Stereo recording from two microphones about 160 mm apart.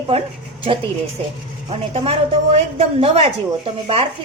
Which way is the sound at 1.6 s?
35° right (ahead or behind).